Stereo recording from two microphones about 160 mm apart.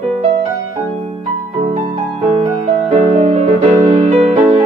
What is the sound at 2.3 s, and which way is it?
Music, 40° right (ahead or behind).